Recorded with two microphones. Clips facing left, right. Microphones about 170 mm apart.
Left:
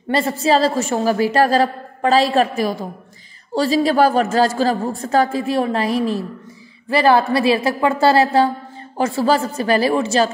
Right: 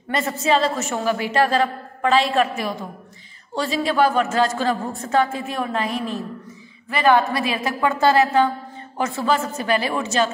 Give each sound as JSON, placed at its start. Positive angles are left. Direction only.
{"t": 0.1, "sound": "a woman's voice", "side_deg": 30}